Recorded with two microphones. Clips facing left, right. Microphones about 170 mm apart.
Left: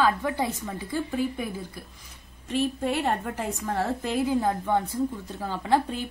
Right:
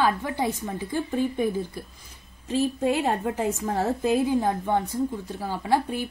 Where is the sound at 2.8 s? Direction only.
20° right (ahead or behind).